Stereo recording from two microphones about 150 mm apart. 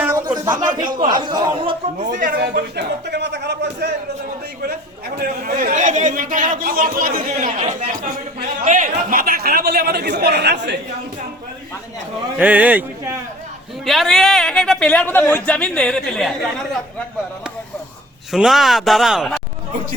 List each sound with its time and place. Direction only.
0.0 s a sound: 15° right (ahead or behind)
0.3 s speech: 25° right (ahead or behind)
2.0 s speech: 60° right (ahead or behind); by 2.6 s 80° right
3.1 s a sound: 90° right
4.6 s a woman's voice: 90° right; by 7.2 s 70° right (ahead or behind)
7.3 s a woman's voice: 50° right (ahead or behind); by 10.8 s 90° right
12.4 s speech: 10° right (ahead or behind)
13.8 s a man's voice: centre (ahead or behind)
18.3 s a man's voice: centre (ahead or behind)